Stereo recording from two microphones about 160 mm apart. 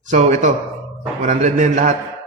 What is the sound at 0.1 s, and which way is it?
A man's voice, 50° right (ahead or behind).